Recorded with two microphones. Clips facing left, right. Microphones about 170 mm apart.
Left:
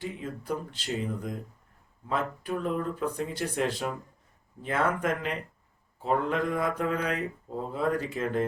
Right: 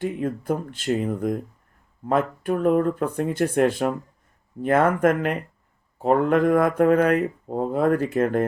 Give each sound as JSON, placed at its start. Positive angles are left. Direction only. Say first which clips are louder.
{"t": 0.0, "sound": "speech", "louder": "right 10 dB", "side_deg": -55}
{"t": 2.0, "sound": "mantra", "louder": "right 8 dB", "side_deg": -55}